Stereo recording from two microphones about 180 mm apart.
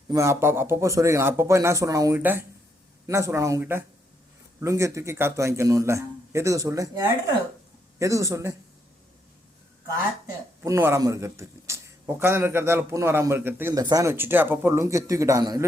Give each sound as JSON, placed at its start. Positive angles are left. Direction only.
{"t": 0.1, "sound": "a man's voice", "side_deg": -15}
{"t": 7.9, "sound": "a man's voice", "side_deg": -15}
{"t": 10.6, "sound": "a man's voice", "side_deg": -15}